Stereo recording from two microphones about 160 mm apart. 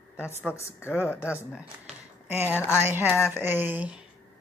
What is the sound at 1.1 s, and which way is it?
Speech, 10° right (ahead or behind).